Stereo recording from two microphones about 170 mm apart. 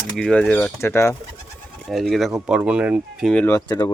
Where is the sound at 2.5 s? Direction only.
5° right (ahead or behind).